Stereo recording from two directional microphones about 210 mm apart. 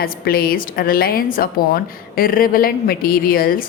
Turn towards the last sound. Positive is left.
turn(degrees=45)  # may be behind; listen again after turning